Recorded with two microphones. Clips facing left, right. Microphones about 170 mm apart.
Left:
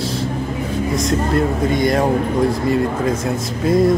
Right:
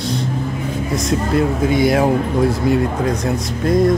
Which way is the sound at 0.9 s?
Centre (ahead or behind).